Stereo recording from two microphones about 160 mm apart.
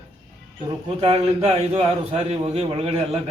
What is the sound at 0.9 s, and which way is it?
A man's voice, 35° right (ahead or behind).